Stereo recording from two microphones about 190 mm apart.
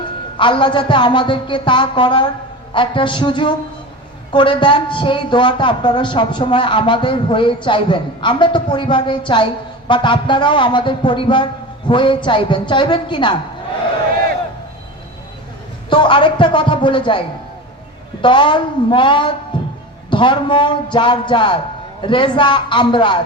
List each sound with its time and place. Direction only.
0.3 s a woman's voice: 25° left (ahead or behind)
15.9 s a woman's voice: 25° left (ahead or behind)